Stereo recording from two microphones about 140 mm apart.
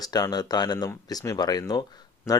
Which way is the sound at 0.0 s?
30° left (ahead or behind).